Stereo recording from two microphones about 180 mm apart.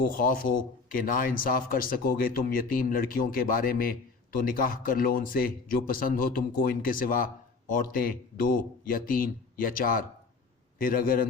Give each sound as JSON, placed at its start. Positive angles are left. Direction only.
{"t": 0.1, "sound": "speech", "side_deg": 50}